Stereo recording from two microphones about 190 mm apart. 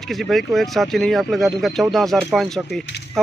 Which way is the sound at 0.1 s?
Centre (ahead or behind).